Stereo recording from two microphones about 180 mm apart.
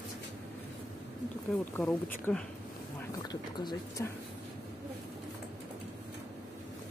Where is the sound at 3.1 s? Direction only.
20° left (ahead or behind).